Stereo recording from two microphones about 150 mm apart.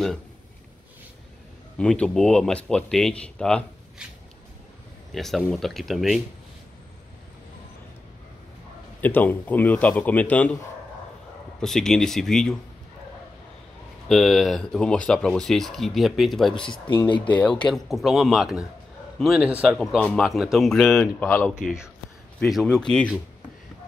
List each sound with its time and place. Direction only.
1.8 s speech: 5° left (ahead or behind)
5.1 s speech: centre (ahead or behind)
9.0 s a man's voice: 10° left (ahead or behind)
11.6 s speech: 5° left (ahead or behind)
14.0 s speech: centre (ahead or behind)
16.5 s speech: 35° left (ahead or behind)
17.2 s a man's voice: 10° left (ahead or behind)
21.0 s a man's voice: 15° left (ahead or behind)
22.5 s speech: centre (ahead or behind)